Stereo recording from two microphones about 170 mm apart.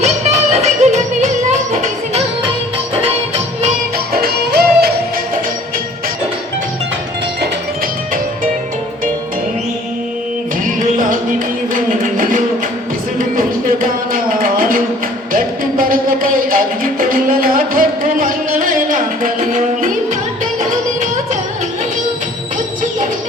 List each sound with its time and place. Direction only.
0.0 s music: 40° right (ahead or behind)
3.9 s music: 65° right (ahead or behind)
11.1 s music: 50° right (ahead or behind)